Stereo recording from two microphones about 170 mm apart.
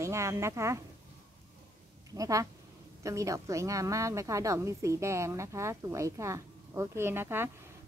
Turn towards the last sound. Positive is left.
turn(degrees=-15)  # may be behind; listen again after turning